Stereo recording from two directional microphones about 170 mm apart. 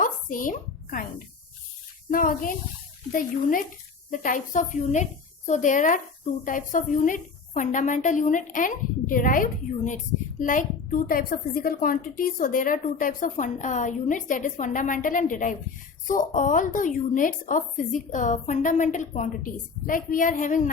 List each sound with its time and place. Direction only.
0.0 s a woman's voice: 50° left (ahead or behind)
2.0 s a woman's voice: 55° left (ahead or behind)